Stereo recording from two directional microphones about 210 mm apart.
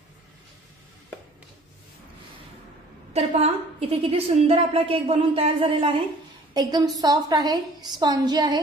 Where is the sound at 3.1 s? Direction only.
30° right (ahead or behind).